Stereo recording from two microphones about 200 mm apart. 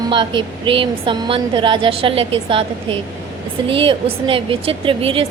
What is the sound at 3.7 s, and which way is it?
A woman's voice, 25° right (ahead or behind).